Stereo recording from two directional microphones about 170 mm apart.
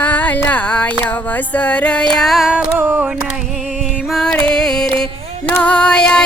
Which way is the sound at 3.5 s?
5° left (ahead or behind).